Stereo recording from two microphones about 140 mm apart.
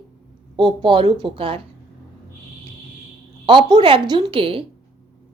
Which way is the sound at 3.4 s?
35° right (ahead or behind).